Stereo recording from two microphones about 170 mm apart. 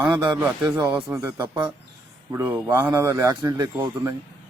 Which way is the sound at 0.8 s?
10° right (ahead or behind).